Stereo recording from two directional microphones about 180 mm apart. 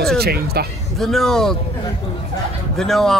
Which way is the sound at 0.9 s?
Centre (ahead or behind).